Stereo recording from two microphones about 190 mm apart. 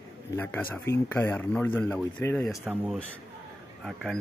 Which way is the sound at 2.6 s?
5° right (ahead or behind).